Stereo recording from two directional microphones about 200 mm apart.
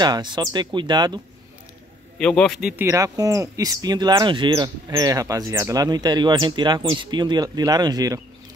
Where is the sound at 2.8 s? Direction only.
15° right (ahead or behind).